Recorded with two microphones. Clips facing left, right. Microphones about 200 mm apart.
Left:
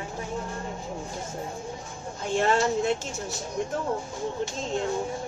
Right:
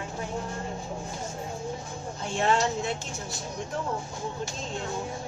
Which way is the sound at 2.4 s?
50° left (ahead or behind).